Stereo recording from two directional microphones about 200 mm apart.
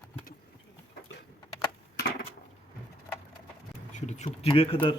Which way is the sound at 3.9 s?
35° left (ahead or behind).